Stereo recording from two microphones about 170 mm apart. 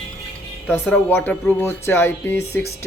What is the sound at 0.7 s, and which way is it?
Speech, 10° left (ahead or behind).